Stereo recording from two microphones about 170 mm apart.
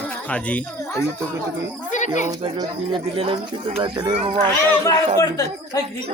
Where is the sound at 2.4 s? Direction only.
30° right (ahead or behind).